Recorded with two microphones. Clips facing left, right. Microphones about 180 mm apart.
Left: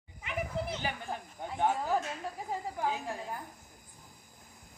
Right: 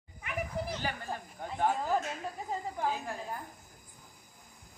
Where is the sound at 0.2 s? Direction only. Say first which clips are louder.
Left 1 dB; 20° left (ahead or behind).